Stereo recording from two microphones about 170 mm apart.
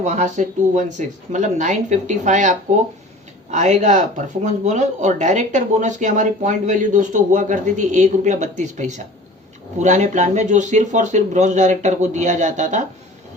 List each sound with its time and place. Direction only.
0.0 s speech: 45° right (ahead or behind)